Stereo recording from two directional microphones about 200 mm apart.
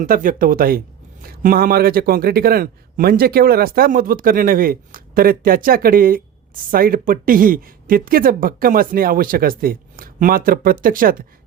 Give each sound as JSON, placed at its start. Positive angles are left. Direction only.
{"t": 0.0, "sound": "a man's voice", "side_deg": -45}